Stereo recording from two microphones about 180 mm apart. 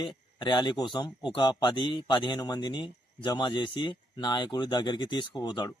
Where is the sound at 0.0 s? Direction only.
25° left (ahead or behind).